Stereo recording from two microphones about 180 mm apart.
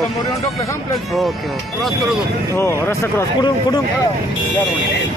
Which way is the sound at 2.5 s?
15° left (ahead or behind).